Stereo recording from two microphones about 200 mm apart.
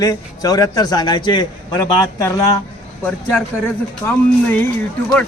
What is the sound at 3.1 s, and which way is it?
A man's voice, 5° left (ahead or behind).